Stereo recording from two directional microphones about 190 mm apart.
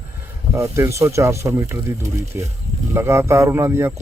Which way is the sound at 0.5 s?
15° right (ahead or behind).